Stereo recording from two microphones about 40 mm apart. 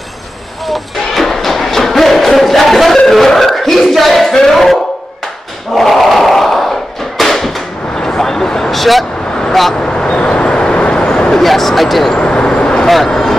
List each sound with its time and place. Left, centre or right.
0.7 s music: centre
3.0 s a sound: centre
5.8 s crowd: centre
7.2 s a sound: centre
9.5 s speech: centre
9.8 s vehicle: left
11.4 s speech: centre
12.2 s vehicle: left
12.8 s speech: centre